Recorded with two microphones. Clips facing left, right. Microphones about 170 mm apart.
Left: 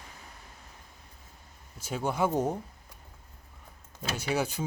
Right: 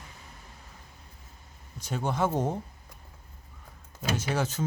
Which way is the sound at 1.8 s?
10° left (ahead or behind).